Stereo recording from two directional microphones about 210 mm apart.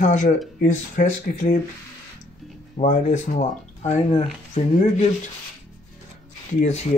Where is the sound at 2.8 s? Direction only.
35° left (ahead or behind).